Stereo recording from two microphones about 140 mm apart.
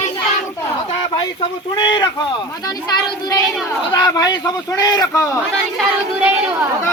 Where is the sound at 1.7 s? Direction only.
35° left (ahead or behind).